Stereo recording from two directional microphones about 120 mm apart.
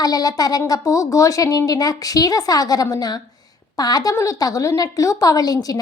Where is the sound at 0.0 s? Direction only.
30° left (ahead or behind).